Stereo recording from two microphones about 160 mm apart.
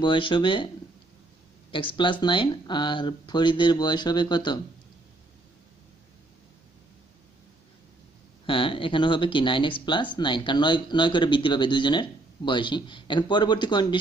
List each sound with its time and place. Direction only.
0.0 s speech: 30° left (ahead or behind)
1.7 s speech: 30° left (ahead or behind)
8.5 s speech: 35° left (ahead or behind)